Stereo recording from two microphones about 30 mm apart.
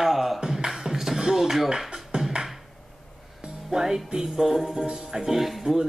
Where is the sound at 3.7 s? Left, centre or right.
Centre.